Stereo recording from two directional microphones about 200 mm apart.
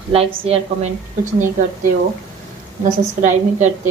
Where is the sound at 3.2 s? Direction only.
35° right (ahead or behind).